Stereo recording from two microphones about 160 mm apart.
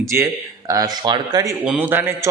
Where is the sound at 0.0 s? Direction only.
20° right (ahead or behind).